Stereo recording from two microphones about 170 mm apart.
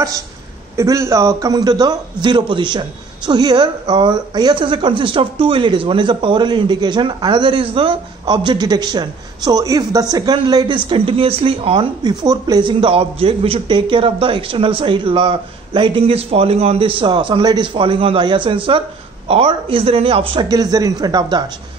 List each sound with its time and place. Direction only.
0.7 s a man's voice: 15° right (ahead or behind)